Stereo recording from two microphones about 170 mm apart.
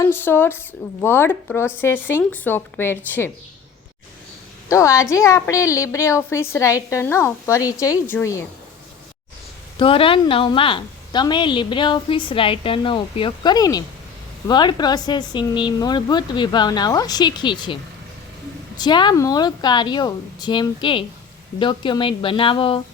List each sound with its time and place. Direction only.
0.0 s a woman's voice: 15° left (ahead or behind)
4.7 s a woman's voice: 20° left (ahead or behind)
9.7 s a woman's voice: 30° left (ahead or behind)
18.8 s a woman's voice: 25° left (ahead or behind)